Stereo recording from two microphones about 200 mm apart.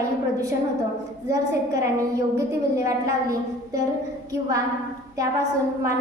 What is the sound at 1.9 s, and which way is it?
A woman's voice, 15° right (ahead or behind).